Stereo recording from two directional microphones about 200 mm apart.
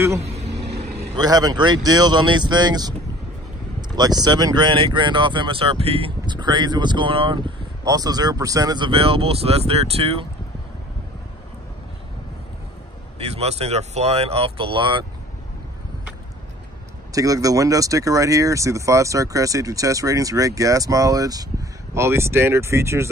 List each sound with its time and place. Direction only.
0.2 s vehicle: 30° right (ahead or behind)
0.5 s vehicle: 55° right (ahead or behind)
1.1 s speech: 20° right (ahead or behind)
3.9 s speech: 20° right (ahead or behind)
13.2 s speech: 30° right (ahead or behind)
17.1 s speech: 15° right (ahead or behind)